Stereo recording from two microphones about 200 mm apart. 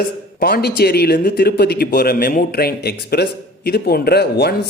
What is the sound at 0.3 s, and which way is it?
Speech, 50° left (ahead or behind).